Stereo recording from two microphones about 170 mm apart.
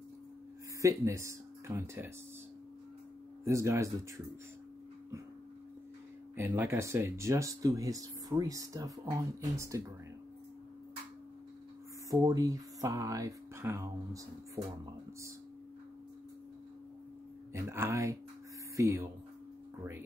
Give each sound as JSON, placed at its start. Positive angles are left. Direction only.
{"t": 0.7, "sound": "speech", "side_deg": -20}
{"t": 3.4, "sound": "speech", "side_deg": -15}
{"t": 6.3, "sound": "speech", "side_deg": -15}
{"t": 12.1, "sound": "speech", "side_deg": -20}
{"t": 17.5, "sound": "speech", "side_deg": -15}